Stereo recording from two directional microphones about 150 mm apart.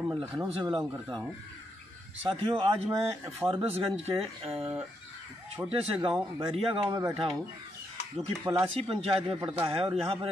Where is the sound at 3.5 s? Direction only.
40° right (ahead or behind).